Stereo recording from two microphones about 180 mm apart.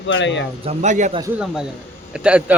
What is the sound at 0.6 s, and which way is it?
Speech, 35° right (ahead or behind).